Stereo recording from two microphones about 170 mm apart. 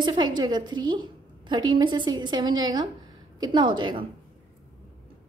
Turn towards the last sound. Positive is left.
turn(degrees=-30)  # may be behind; listen again after turning